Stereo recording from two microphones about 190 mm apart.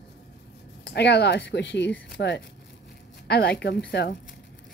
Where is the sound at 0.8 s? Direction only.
60° left (ahead or behind).